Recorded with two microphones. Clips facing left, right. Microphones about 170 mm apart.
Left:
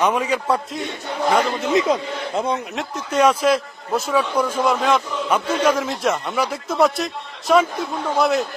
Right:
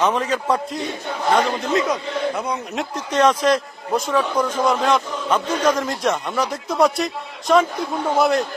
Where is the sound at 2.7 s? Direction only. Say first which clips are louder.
Right 1 dB; 5° left (ahead or behind).